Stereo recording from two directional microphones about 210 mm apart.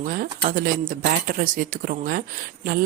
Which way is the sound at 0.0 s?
40° right (ahead or behind).